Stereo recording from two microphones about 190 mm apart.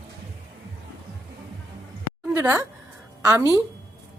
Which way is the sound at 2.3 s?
15° right (ahead or behind).